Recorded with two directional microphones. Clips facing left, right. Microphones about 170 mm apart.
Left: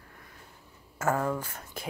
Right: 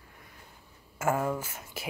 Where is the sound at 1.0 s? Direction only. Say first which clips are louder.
Even; 10° right (ahead or behind).